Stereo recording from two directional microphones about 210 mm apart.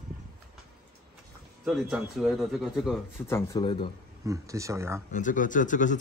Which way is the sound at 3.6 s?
25° left (ahead or behind).